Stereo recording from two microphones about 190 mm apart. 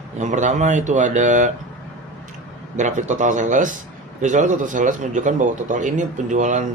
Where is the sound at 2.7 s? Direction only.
40° right (ahead or behind).